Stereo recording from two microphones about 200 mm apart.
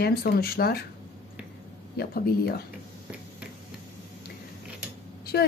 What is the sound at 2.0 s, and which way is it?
Speech, 50° left (ahead or behind).